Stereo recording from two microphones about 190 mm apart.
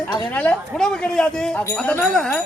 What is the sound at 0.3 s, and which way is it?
A man's voice, 5° left (ahead or behind).